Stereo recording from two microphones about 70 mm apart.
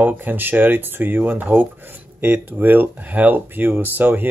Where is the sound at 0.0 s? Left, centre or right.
Right.